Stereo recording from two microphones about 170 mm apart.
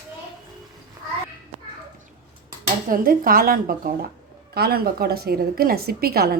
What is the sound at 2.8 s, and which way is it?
A woman's voice, 55° right (ahead or behind).